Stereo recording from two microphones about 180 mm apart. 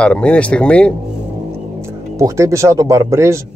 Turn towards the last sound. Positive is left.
turn(degrees=-15)  # may be behind; listen again after turning